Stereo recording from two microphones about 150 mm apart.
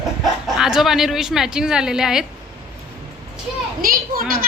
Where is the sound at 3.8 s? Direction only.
75° right (ahead or behind).